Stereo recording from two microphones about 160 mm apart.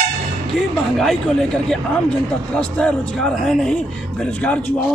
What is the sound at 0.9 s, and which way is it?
A man's voice, 5° left (ahead or behind).